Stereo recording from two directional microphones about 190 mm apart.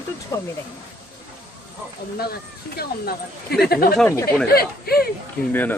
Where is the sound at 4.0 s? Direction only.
15° left (ahead or behind).